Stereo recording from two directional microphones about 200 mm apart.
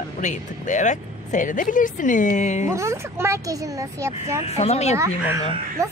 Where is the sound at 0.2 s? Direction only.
40° left (ahead or behind).